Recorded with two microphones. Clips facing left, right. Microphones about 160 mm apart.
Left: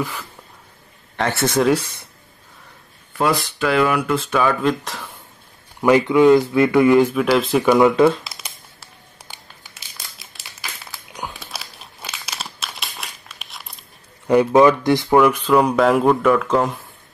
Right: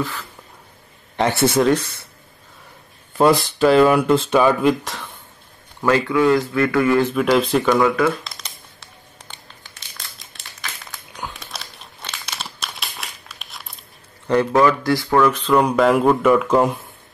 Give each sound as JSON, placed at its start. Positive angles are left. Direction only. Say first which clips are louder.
{"t": 0.0, "sound": "speech", "louder": "even", "side_deg": 10}
{"t": 1.1, "sound": "a man's voice", "louder": "right 3 dB", "side_deg": -15}
{"t": 1.6, "sound": "speech", "louder": "even", "side_deg": 10}
{"t": 3.2, "sound": "speech", "louder": "right 5 dB", "side_deg": -30}
{"t": 4.6, "sound": "speech", "louder": "right 2 dB", "side_deg": 0}
{"t": 5.8, "sound": "speech", "louder": "left 4 dB", "side_deg": 15}
{"t": 7.2, "sound": "speech", "louder": "even", "side_deg": 0}
{"t": 7.8, "sound": "speech", "louder": "left 4 dB", "side_deg": 25}
{"t": 8.2, "sound": "crumpling", "louder": "even", "side_deg": 5}
{"t": 9.2, "sound": "a sound", "louder": "even", "side_deg": 10}
{"t": 10.1, "sound": "crumpling", "louder": "even", "side_deg": 5}
{"t": 14.2, "sound": "speech", "louder": "left 3 dB", "side_deg": 10}